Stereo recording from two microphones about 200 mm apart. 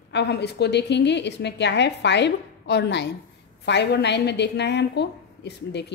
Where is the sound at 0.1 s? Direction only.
60° left (ahead or behind).